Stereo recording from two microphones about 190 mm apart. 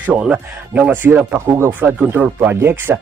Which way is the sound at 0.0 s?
10° right (ahead or behind).